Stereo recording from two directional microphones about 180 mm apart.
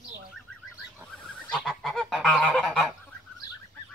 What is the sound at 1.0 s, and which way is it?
Goose, 5° left (ahead or behind).